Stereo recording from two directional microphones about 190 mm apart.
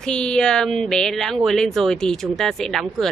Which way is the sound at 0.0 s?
5° left (ahead or behind).